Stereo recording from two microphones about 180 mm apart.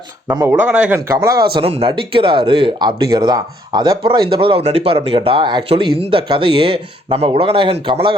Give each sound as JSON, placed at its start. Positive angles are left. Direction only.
{"t": 0.3, "sound": "speech", "side_deg": -20}
{"t": 0.6, "sound": "speech", "side_deg": -10}
{"t": 1.5, "sound": "speech", "side_deg": -30}